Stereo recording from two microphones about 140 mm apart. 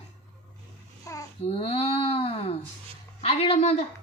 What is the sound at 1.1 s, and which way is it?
Speech, 25° left (ahead or behind).